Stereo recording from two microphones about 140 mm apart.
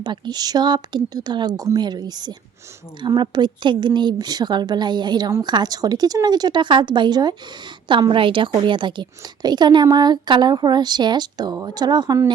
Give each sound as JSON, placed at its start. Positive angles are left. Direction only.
{"t": 0.0, "sound": "a woman's voice", "side_deg": -30}